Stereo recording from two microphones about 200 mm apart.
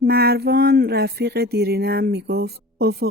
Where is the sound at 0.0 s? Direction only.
50° right (ahead or behind).